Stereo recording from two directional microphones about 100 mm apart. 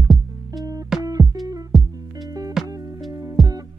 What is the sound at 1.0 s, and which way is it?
Music, 40° right (ahead or behind).